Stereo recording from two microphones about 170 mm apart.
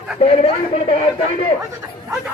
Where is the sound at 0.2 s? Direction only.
35° left (ahead or behind).